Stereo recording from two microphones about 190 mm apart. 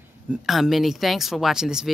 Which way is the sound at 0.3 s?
Centre (ahead or behind).